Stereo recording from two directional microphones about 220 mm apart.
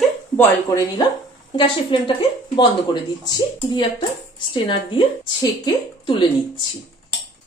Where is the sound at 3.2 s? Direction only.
20° left (ahead or behind).